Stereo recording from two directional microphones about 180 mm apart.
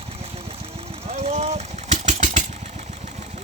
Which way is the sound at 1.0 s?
35° right (ahead or behind).